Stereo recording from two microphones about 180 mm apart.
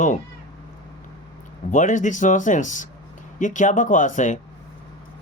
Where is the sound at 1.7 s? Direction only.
45° left (ahead or behind).